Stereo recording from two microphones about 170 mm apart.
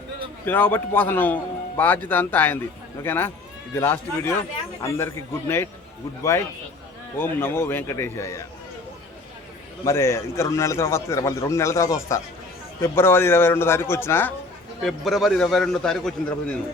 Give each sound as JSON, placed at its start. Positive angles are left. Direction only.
{"t": 0.4, "sound": "a man's voice", "side_deg": 10}
{"t": 7.2, "sound": "a man's voice", "side_deg": 15}
{"t": 9.8, "sound": "a man's voice", "side_deg": 15}
{"t": 14.8, "sound": "a man's voice", "side_deg": 0}